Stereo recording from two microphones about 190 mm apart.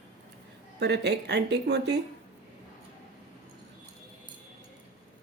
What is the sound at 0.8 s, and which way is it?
Speech, 60° right (ahead or behind).